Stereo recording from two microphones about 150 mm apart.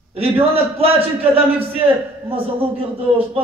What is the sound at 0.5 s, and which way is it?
A man's voice, 40° right (ahead or behind).